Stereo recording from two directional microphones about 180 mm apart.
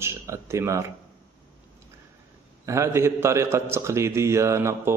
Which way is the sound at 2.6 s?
15° right (ahead or behind).